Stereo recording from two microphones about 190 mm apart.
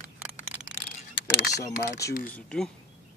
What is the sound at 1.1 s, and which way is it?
Mechanisms, 65° left (ahead or behind).